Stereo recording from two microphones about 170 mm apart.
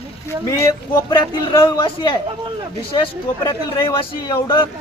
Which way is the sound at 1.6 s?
30° left (ahead or behind).